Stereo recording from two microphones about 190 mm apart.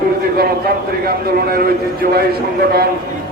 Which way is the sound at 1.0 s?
50° right (ahead or behind).